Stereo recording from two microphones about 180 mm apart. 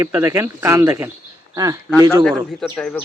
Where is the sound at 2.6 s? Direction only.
5° left (ahead or behind).